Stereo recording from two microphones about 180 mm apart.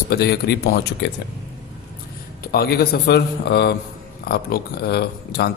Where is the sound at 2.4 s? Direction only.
60° left (ahead or behind).